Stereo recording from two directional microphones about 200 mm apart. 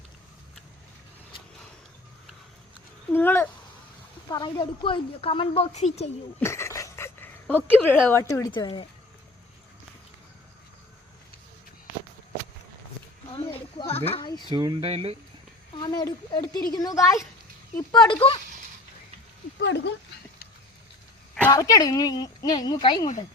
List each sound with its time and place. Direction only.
3.1 s speech: 10° left (ahead or behind)
4.3 s a woman's voice: 20° left (ahead or behind)
6.4 s speech: 15° left (ahead or behind)
13.3 s speech: 30° left (ahead or behind)
14.5 s speech: 20° right (ahead or behind)
15.8 s a woman's voice: 20° left (ahead or behind)
19.5 s speech: 60° left (ahead or behind)
21.3 s a woman's voice: 10° left (ahead or behind)